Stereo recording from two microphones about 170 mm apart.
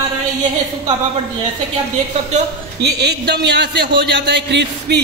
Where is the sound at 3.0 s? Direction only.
80° right.